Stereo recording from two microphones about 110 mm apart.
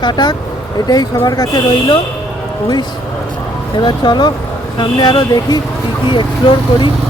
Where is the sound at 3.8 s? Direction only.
40° left (ahead or behind).